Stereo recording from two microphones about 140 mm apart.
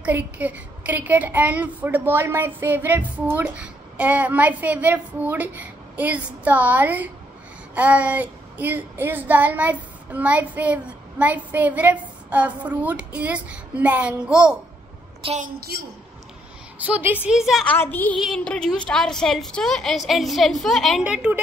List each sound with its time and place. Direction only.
0.0 s a woman's voice: 10° right (ahead or behind)
15.4 s a woman's voice: 90° right
16.7 s a woman's voice: 10° right (ahead or behind)
17.6 s a woman's voice: 15° left (ahead or behind); by 21.4 s 10° right (ahead or behind)